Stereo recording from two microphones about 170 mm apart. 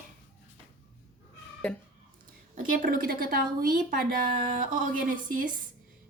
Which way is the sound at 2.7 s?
55° right (ahead or behind).